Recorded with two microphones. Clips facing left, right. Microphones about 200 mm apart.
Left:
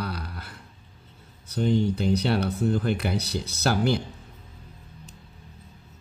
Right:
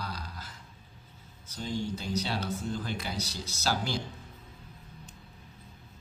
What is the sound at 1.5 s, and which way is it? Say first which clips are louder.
Speech: left 11 dB; 60° left (ahead or behind).